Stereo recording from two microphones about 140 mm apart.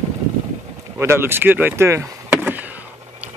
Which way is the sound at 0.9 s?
15° right (ahead or behind).